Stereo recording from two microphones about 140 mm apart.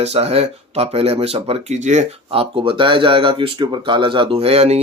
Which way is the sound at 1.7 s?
55° right (ahead or behind).